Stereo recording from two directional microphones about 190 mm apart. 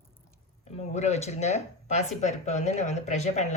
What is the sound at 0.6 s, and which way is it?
Speech, 35° left (ahead or behind).